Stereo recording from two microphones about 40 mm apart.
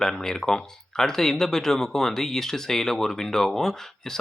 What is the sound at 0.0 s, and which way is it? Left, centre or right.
Speech, centre.